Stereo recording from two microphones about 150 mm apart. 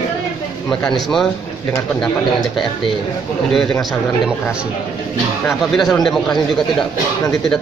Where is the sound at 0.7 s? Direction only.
5° left (ahead or behind).